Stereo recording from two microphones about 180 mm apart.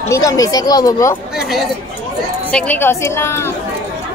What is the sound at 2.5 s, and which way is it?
A woman's voice, 10° left (ahead or behind).